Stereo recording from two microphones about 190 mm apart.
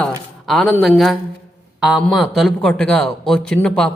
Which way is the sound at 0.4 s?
Centre (ahead or behind).